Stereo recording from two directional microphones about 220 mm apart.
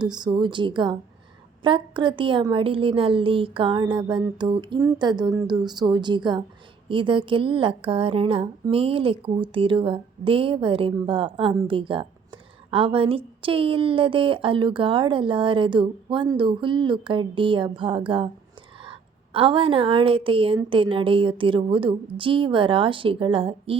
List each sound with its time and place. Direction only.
0.0 s speech: 20° right (ahead or behind)